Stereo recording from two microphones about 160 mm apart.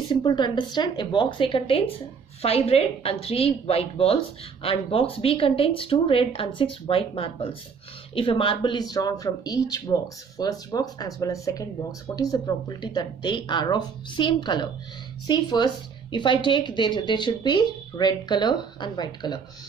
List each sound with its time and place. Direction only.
0.1 s speech: 30° left (ahead or behind)